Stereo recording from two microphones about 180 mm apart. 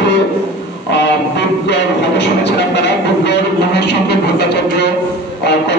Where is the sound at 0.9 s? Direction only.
70° left (ahead or behind).